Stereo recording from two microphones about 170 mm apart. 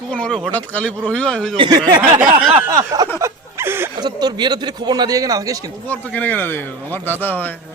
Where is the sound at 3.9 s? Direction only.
25° right (ahead or behind).